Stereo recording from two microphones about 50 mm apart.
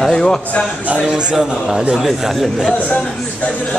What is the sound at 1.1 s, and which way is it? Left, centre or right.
A man's voice, centre.